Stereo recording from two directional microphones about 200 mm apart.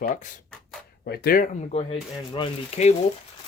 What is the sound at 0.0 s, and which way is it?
Speech, 40° left (ahead or behind).